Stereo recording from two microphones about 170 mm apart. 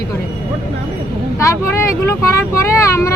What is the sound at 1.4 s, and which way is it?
Speech, 15° left (ahead or behind).